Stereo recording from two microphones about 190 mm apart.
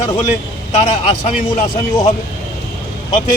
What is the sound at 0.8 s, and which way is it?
Speech, 35° left (ahead or behind).